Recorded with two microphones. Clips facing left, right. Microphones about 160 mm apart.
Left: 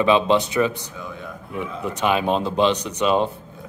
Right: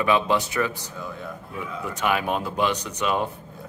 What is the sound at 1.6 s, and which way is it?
Speech, 20° left (ahead or behind).